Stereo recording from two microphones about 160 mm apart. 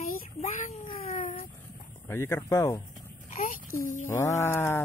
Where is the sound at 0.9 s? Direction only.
40° left (ahead or behind).